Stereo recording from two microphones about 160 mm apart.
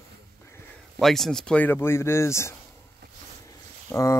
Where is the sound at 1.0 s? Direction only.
Centre (ahead or behind); by 2.6 s 15° left (ahead or behind).